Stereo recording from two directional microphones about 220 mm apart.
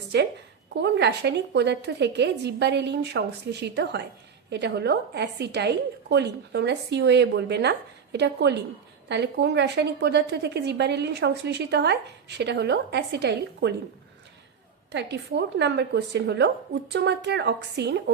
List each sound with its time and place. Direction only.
0.1 s a woman's voice: 50° right (ahead or behind)
14.9 s a woman's voice: 50° right (ahead or behind)